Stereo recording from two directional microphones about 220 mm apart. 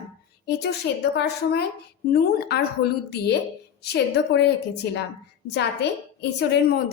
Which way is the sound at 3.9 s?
50° left (ahead or behind).